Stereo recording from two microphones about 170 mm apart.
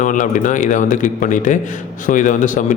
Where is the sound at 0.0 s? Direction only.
50° left (ahead or behind).